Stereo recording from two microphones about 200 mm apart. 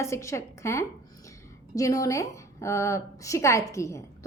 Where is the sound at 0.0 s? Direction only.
15° left (ahead or behind).